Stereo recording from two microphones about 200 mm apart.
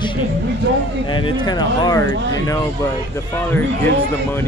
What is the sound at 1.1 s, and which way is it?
Speech, 20° left (ahead or behind).